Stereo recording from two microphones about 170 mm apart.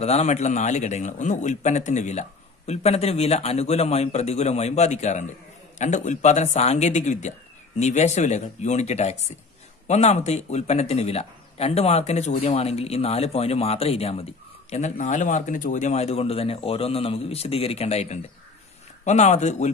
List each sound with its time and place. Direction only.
0.0 s a man's voice: 40° left (ahead or behind)